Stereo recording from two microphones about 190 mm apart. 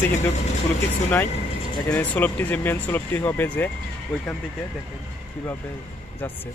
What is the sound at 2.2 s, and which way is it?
Speech, 10° left (ahead or behind).